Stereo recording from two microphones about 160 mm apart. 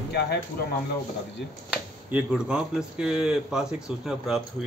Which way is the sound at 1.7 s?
5° right (ahead or behind).